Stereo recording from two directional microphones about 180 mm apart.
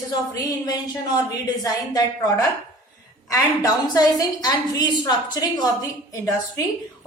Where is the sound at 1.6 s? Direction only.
20° left (ahead or behind).